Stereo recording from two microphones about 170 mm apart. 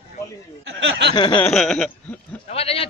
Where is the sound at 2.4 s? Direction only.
35° left (ahead or behind).